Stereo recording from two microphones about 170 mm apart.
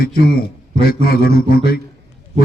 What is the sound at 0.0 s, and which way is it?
A man's voice, 60° left (ahead or behind).